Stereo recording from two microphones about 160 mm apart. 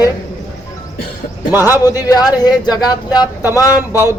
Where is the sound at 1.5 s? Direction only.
15° right (ahead or behind).